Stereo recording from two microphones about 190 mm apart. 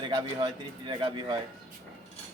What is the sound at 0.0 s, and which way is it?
A man's voice, 25° right (ahead or behind).